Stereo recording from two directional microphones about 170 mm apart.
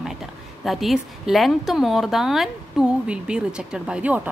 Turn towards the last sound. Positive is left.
turn(degrees=-10)  # may be behind; listen again after turning